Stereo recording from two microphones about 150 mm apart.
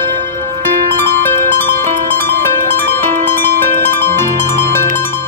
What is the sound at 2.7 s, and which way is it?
Harp, 15° left (ahead or behind).